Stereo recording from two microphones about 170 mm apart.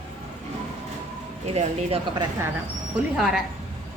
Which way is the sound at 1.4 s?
40° right (ahead or behind).